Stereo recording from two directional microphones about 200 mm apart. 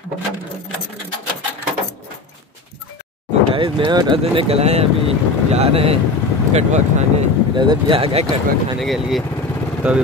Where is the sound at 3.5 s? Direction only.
25° right (ahead or behind).